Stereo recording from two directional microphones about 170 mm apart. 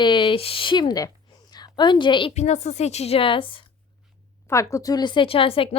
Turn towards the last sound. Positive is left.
turn(degrees=30)  # may be behind; listen again after turning